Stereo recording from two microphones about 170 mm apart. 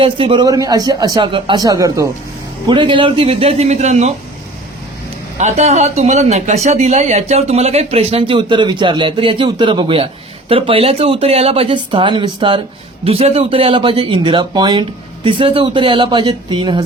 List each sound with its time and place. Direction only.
0.0 s speech: 30° right (ahead or behind)
5.4 s speech: 40° right (ahead or behind)